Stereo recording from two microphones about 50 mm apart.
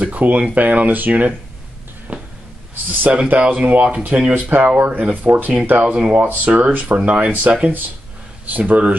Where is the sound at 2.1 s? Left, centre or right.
Right.